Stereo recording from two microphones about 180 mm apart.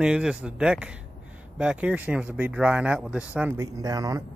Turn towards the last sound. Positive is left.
turn(degrees=-20)  # may be behind; listen again after turning